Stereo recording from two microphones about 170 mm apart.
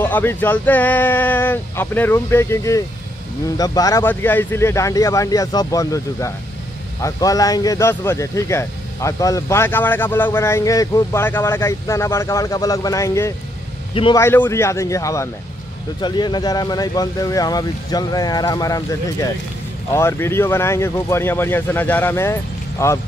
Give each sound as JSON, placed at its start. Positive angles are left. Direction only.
{"t": 0.0, "sound": "speech", "side_deg": 10}